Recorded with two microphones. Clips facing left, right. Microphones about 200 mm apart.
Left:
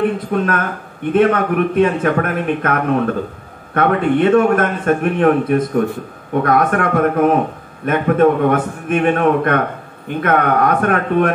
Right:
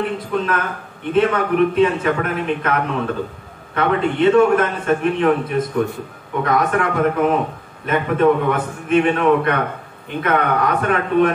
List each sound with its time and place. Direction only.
0.3 s a man's voice: 50° left (ahead or behind)